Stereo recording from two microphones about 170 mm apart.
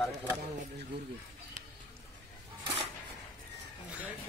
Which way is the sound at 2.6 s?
35° right (ahead or behind).